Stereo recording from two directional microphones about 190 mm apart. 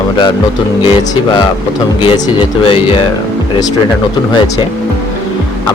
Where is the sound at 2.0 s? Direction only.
20° left (ahead or behind).